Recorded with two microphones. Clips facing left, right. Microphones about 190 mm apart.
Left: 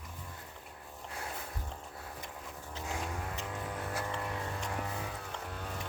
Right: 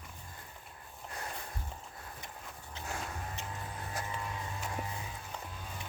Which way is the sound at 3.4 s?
70° left (ahead or behind).